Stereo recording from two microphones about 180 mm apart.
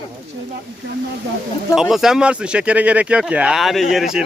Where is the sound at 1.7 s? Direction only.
Centre (ahead or behind).